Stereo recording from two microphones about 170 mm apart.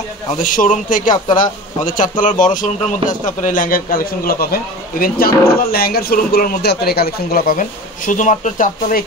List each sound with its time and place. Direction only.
0.4 s speech: 50° left (ahead or behind)
1.1 s speech: 25° left (ahead or behind)
1.9 s a man's voice: 50° left (ahead or behind)
8.1 s speech: 50° left (ahead or behind)